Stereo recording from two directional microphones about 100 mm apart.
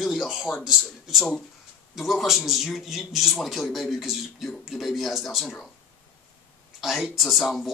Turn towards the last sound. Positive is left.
turn(degrees=0)  # may be behind; listen again after turning